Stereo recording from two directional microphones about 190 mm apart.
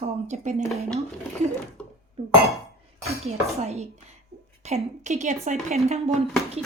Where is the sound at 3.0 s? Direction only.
35° right (ahead or behind).